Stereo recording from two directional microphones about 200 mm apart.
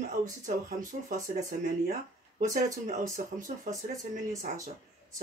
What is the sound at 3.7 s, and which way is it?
Speech, 15° right (ahead or behind).